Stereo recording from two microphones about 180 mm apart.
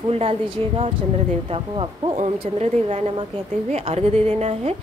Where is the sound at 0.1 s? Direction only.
35° right (ahead or behind).